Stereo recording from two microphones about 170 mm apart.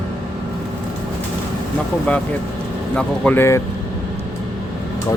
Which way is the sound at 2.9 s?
10° left (ahead or behind).